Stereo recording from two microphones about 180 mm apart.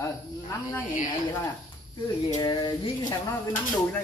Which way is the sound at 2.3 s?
20° left (ahead or behind).